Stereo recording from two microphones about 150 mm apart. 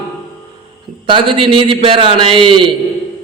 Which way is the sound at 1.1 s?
35° right (ahead or behind).